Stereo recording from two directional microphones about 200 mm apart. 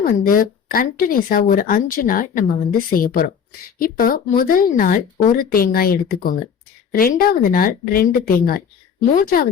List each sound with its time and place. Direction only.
0.0 s speech: 45° left (ahead or behind)